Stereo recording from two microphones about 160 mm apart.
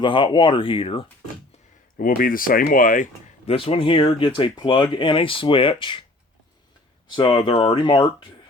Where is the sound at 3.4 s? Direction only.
35° left (ahead or behind).